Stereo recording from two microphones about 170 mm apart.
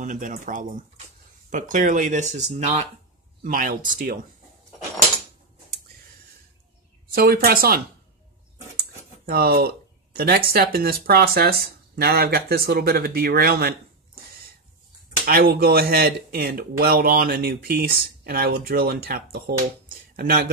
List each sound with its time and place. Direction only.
0.0 s speech: 50° right (ahead or behind)
3.4 s speech: 55° right (ahead or behind)
7.1 s speech: 60° right (ahead or behind)
9.2 s speech: 65° right (ahead or behind)
15.2 s speech: 60° right (ahead or behind)